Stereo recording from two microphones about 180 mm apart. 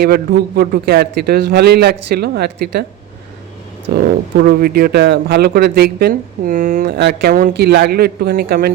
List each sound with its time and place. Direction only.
0.0 s speech: 55° right (ahead or behind)
3.9 s speech: 55° right (ahead or behind)